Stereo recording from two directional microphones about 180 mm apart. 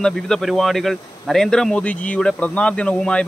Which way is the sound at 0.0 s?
Centre (ahead or behind).